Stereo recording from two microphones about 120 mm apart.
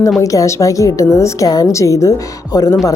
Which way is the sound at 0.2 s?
25° left (ahead or behind).